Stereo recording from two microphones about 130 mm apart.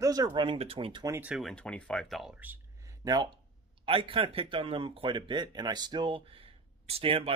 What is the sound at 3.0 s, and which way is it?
Speech, 30° right (ahead or behind).